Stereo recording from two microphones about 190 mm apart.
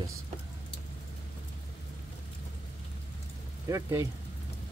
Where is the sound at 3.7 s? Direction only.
15° right (ahead or behind).